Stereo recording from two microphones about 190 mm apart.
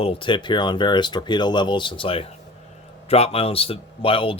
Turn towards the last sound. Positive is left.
turn(degrees=30)  # may be behind; listen again after turning